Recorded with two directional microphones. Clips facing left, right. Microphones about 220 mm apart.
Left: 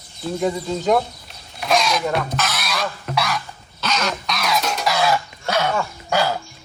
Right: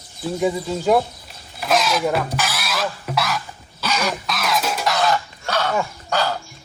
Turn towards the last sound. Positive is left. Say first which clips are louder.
# left 2 dB
turn(degrees=10)  # may be behind; listen again after turning